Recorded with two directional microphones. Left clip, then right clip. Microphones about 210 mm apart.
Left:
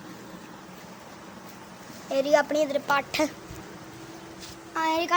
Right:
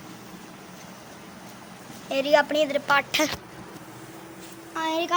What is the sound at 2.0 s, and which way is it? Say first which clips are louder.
A child's voice: right 1 dB; centre (ahead or behind).